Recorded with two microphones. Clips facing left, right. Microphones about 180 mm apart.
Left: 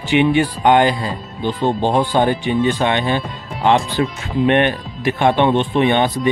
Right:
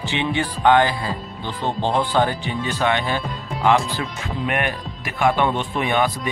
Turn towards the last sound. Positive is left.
turn(degrees=25)  # may be behind; listen again after turning